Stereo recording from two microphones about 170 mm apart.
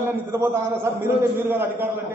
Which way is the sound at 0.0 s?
10° right (ahead or behind).